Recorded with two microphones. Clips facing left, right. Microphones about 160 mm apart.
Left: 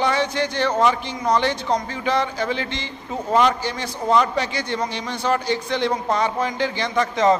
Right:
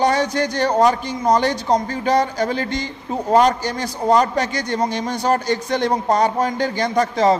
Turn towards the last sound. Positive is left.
turn(degrees=-35)  # may be behind; listen again after turning